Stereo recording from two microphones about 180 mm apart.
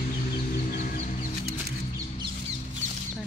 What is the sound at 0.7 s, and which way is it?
Music, 50° left (ahead or behind).